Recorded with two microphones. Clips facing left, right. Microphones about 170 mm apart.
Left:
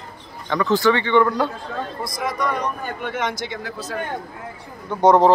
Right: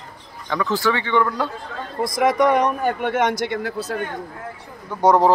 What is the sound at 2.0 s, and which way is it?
A man's voice, 90° right.